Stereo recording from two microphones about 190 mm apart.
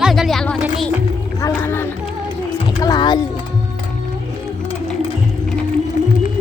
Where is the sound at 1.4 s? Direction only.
15° left (ahead or behind).